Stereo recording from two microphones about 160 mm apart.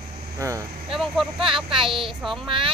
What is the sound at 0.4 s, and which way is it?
Speech, 20° right (ahead or behind).